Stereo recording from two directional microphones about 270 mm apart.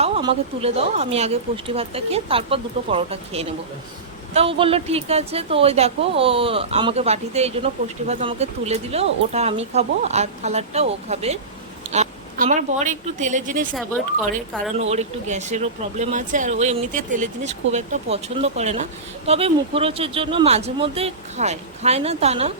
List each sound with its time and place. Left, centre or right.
0.0 s speech: centre
14.8 s speech: right